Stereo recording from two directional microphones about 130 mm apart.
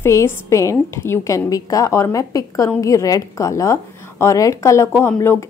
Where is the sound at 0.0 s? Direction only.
20° left (ahead or behind).